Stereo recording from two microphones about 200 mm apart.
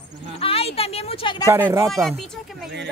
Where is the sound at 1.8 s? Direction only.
Centre (ahead or behind).